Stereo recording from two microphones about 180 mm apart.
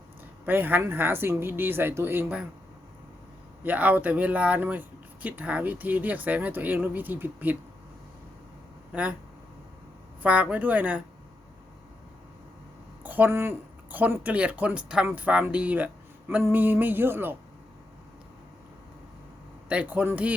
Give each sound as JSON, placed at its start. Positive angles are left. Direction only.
{"t": 0.4, "sound": "speech", "side_deg": -10}
{"t": 3.6, "sound": "speech", "side_deg": -10}
{"t": 8.9, "sound": "speech", "side_deg": -5}
{"t": 10.2, "sound": "speech", "side_deg": -10}
{"t": 13.0, "sound": "speech", "side_deg": -10}
{"t": 19.6, "sound": "speech", "side_deg": -5}